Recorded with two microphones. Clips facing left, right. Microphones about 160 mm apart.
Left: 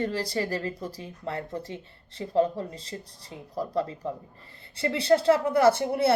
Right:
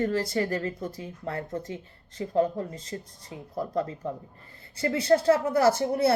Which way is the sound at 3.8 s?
20° left (ahead or behind).